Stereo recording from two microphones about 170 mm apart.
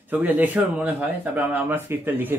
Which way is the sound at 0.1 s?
10° right (ahead or behind).